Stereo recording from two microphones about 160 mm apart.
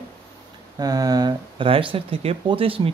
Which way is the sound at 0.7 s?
25° right (ahead or behind).